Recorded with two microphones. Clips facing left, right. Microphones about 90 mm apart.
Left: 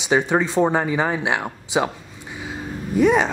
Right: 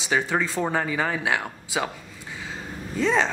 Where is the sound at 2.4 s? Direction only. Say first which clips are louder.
Left 6 dB; 15° left (ahead or behind).